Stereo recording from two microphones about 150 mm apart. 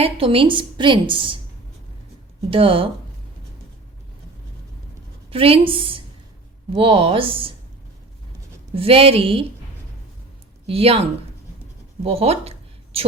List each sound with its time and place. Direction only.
0.0 s a woman's voice: 35° right (ahead or behind)
2.5 s a woman's voice: 35° right (ahead or behind)
5.3 s a woman's voice: 40° right (ahead or behind)
8.7 s a woman's voice: 40° right (ahead or behind)
10.7 s a woman's voice: 40° right (ahead or behind)
12.0 s a sound: 40° right (ahead or behind)